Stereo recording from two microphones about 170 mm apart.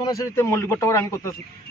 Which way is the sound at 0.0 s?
20° left (ahead or behind).